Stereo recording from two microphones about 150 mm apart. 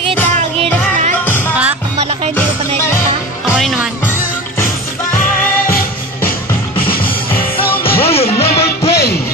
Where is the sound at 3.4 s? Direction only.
Centre (ahead or behind).